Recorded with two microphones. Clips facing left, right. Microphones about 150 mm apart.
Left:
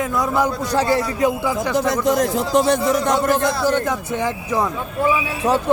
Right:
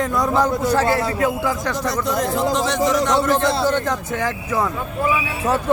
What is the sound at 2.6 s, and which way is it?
Speech, 55° left (ahead or behind).